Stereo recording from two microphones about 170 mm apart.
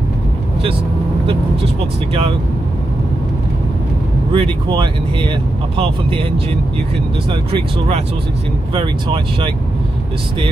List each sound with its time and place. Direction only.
4.3 s speech: 30° right (ahead or behind)
7.2 s speech: 30° right (ahead or behind)